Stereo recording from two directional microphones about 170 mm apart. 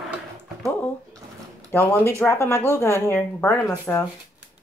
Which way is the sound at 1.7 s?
15° left (ahead or behind).